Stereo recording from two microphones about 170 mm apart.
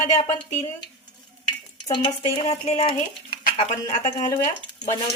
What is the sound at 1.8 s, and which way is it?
Speech, 30° left (ahead or behind).